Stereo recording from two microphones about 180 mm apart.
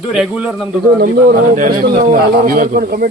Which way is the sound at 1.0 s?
55° right (ahead or behind).